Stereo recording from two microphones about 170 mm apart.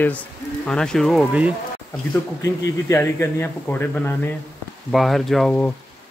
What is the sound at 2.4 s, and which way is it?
A man's voice, 15° left (ahead or behind).